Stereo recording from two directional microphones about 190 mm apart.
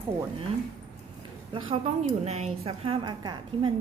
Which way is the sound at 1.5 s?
30° right (ahead or behind).